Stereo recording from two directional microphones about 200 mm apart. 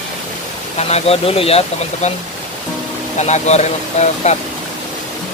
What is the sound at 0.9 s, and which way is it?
Speech, 30° left (ahead or behind).